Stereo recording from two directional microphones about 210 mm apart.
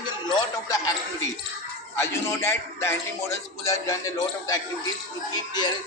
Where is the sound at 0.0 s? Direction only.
20° left (ahead or behind).